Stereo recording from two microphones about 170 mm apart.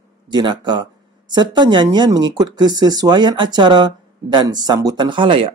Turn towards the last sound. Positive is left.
turn(degrees=-30)  # may be behind; listen again after turning